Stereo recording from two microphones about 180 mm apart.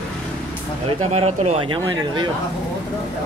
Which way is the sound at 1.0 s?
35° right (ahead or behind).